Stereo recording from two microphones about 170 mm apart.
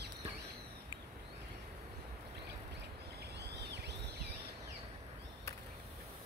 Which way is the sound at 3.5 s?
85° right.